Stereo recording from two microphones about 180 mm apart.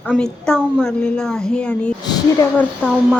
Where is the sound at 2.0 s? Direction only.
20° left (ahead or behind).